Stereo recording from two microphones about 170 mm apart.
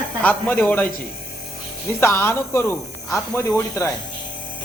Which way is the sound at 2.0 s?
15° left (ahead or behind).